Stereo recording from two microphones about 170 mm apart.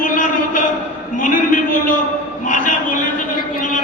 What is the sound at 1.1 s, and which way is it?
Speech, 50° left (ahead or behind).